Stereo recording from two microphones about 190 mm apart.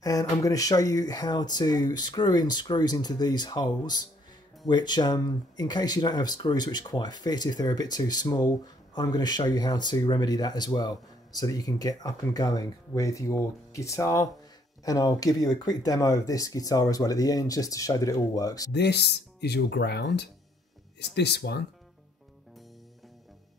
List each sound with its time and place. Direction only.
0.0 s speech: 20° left (ahead or behind)
18.7 s speech: 60° left (ahead or behind)